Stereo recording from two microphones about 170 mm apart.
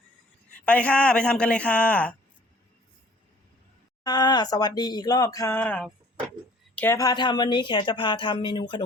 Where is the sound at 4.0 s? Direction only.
25° left (ahead or behind).